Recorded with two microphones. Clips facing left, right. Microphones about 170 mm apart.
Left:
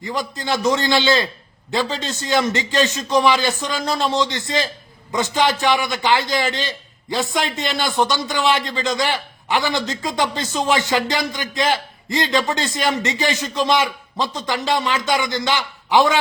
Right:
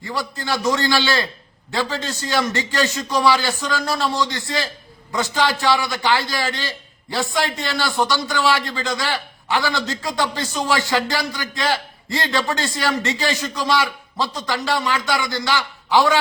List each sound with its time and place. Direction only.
0.0 s a man's voice: 20° left (ahead or behind)